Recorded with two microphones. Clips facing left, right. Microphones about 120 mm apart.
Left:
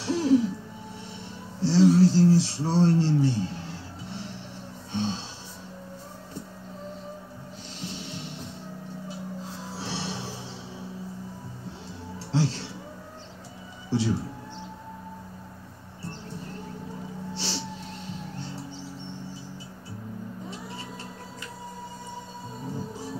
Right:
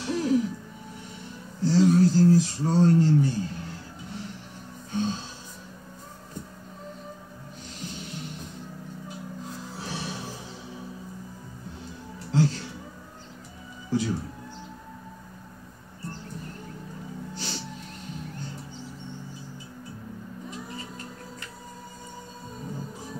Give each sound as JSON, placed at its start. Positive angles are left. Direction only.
{"t": 0.0, "sound": "music", "side_deg": 30}
{"t": 1.6, "sound": "a sound", "side_deg": 30}
{"t": 4.9, "sound": "music", "side_deg": 30}
{"t": 7.8, "sound": "music", "side_deg": 30}
{"t": 12.3, "sound": "music", "side_deg": 30}
{"t": 13.8, "sound": "music", "side_deg": 30}
{"t": 17.3, "sound": "music", "side_deg": 30}
{"t": 20.4, "sound": "vehicle", "side_deg": 30}